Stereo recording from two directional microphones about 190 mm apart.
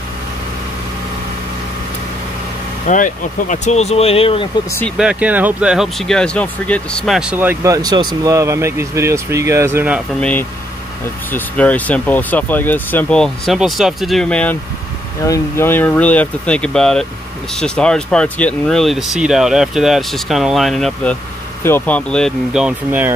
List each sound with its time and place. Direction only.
2.9 s speech: 40° left (ahead or behind)
4.9 s speech: 5° right (ahead or behind)
11.3 s speech: 10° left (ahead or behind); by 23.1 s 10° right (ahead or behind)